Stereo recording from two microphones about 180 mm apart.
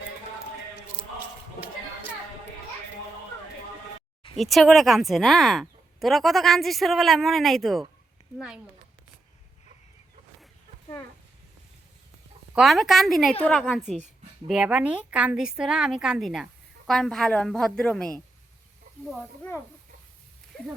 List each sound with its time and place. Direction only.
4.4 s a woman's voice: centre (ahead or behind)
12.5 s a woman's voice: centre (ahead or behind)
19.4 s speech: 10° left (ahead or behind)